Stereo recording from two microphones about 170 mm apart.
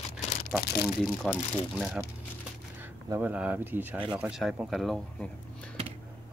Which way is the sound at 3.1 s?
10° right (ahead or behind).